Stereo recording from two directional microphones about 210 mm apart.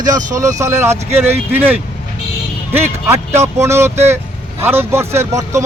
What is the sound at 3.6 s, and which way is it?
Speech, 10° right (ahead or behind).